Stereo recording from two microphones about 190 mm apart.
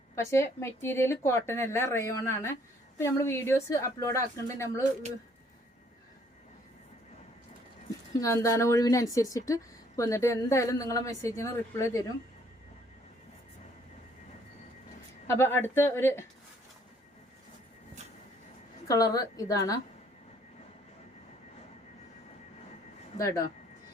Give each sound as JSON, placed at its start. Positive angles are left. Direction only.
{"t": 0.3, "sound": "a woman's voice", "side_deg": 15}
{"t": 8.1, "sound": "a woman's voice", "side_deg": 15}
{"t": 15.3, "sound": "a woman's voice", "side_deg": 10}
{"t": 18.9, "sound": "a woman's voice", "side_deg": 20}
{"t": 23.1, "sound": "speech", "side_deg": 20}